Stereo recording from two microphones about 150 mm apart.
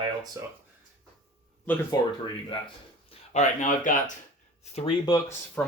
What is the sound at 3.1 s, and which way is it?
Speech, 50° left (ahead or behind).